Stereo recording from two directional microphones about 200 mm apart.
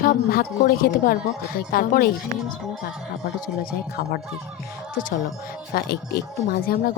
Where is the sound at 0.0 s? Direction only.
45° left (ahead or behind).